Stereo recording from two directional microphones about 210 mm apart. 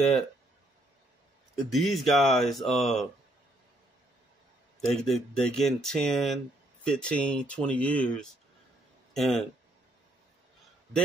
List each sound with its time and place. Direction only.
1.7 s speech: centre (ahead or behind)
4.7 s speech: centre (ahead or behind)